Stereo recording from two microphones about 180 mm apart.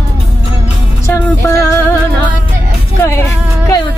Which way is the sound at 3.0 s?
15° left (ahead or behind).